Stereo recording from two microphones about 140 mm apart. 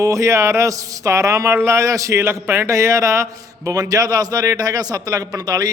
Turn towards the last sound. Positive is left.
turn(degrees=-25)  # may be behind; listen again after turning